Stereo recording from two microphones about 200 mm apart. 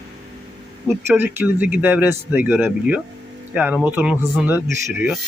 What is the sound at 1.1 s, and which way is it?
Speech, 10° right (ahead or behind).